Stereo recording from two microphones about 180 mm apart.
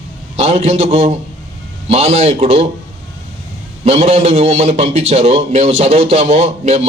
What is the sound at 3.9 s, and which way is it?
A man's voice, 35° right (ahead or behind).